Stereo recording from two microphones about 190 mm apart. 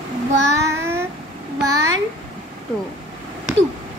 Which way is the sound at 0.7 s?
15° right (ahead or behind).